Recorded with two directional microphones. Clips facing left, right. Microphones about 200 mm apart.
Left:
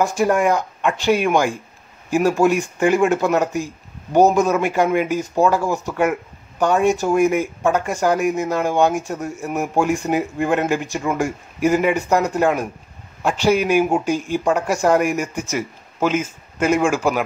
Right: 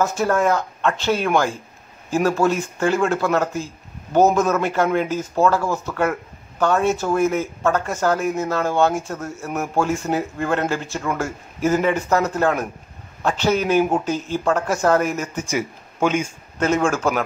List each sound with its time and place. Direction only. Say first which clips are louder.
0.0 s speech: left 2 dB; 15° left (ahead or behind)
15.4 s speech: right 1 dB; centre (ahead or behind)